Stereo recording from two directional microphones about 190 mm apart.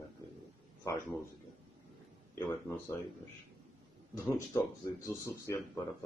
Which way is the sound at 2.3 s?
15° left (ahead or behind).